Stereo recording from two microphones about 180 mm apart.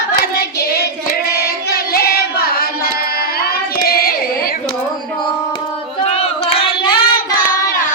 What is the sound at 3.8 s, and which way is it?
Child singing, 60° left (ahead or behind).